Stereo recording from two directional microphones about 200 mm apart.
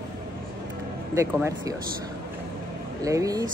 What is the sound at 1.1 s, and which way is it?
Speech, 15° right (ahead or behind).